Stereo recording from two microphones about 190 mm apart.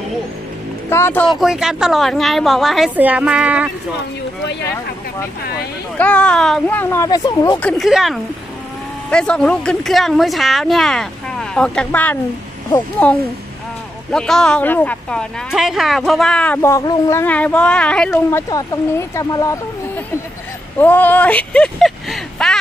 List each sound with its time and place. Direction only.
0.8 s speech: 15° left (ahead or behind)
1.3 s speech: centre (ahead or behind)
5.4 s speech: 55° left (ahead or behind)
5.9 s speech: 5° left (ahead or behind); by 7.6 s 20° left (ahead or behind)
7.6 s speech: centre (ahead or behind)
18.5 s speech: 15° left (ahead or behind)
20.8 s a sound: 10° left (ahead or behind)